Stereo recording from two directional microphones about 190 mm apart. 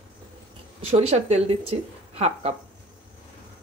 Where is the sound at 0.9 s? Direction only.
35° right (ahead or behind).